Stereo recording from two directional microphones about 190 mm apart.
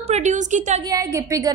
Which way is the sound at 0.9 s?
15° right (ahead or behind).